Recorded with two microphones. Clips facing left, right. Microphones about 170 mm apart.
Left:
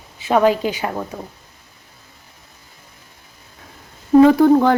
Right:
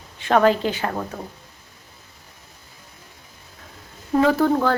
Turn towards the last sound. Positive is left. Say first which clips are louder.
# left 7 dB
turn(degrees=15)  # may be behind; listen again after turning